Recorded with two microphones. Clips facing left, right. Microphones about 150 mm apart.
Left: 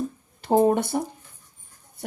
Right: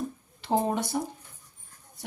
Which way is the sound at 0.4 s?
50° left (ahead or behind).